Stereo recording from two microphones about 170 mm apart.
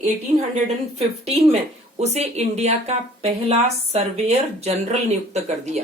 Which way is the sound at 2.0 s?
40° right (ahead or behind).